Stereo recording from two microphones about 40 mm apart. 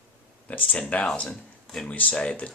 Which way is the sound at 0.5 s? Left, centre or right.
Left.